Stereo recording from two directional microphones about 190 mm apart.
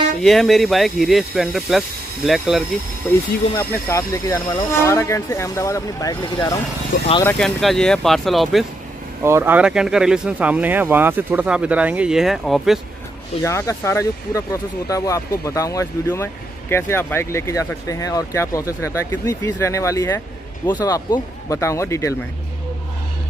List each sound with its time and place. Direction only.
0.2 s speech: centre (ahead or behind)
3.5 s speech: 15° left (ahead or behind)
7.2 s speech: 5° left (ahead or behind)
9.2 s speech: 10° right (ahead or behind)
13.4 s speech: 15° left (ahead or behind)